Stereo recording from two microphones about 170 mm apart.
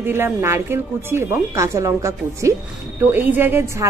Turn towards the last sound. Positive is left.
turn(degrees=-15)  # may be behind; listen again after turning